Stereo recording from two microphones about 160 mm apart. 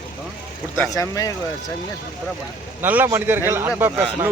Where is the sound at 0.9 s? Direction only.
20° left (ahead or behind).